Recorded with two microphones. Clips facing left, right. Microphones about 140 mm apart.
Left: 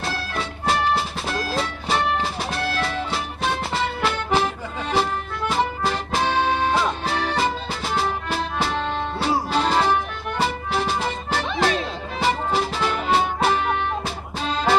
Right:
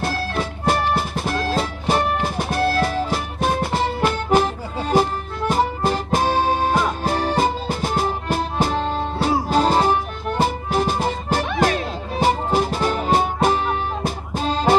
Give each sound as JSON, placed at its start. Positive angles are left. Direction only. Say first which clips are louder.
{"t": 0.0, "sound": "music", "louder": "right 4 dB", "side_deg": -50}